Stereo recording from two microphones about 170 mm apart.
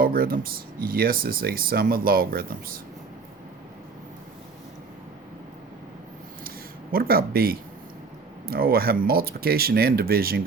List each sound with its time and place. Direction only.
0.0 s speech: 60° right (ahead or behind)
6.9 s speech: 60° right (ahead or behind)